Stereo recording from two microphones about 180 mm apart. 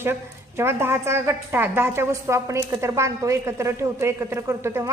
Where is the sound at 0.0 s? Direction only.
15° right (ahead or behind).